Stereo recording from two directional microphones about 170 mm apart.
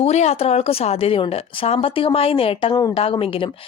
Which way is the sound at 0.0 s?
40° left (ahead or behind).